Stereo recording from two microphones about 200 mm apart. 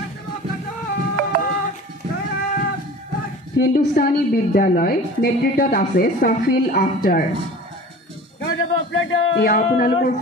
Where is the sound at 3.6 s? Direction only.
50° left (ahead or behind).